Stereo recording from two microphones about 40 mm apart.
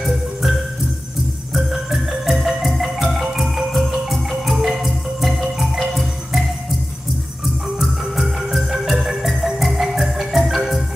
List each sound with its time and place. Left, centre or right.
0.0 s music: centre
1.5 s marimba: centre
7.4 s marimba: centre